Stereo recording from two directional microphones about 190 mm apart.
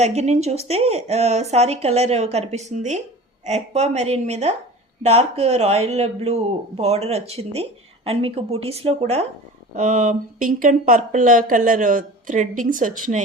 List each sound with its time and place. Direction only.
0.0 s speech: 35° right (ahead or behind)